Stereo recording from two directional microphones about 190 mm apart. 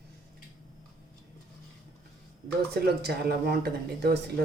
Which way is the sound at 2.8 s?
55° right (ahead or behind).